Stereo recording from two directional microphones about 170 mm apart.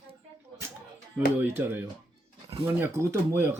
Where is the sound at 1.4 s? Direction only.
10° right (ahead or behind).